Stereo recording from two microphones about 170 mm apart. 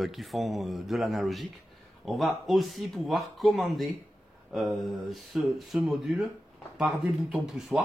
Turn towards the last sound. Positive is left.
turn(degrees=-5)  # may be behind; listen again after turning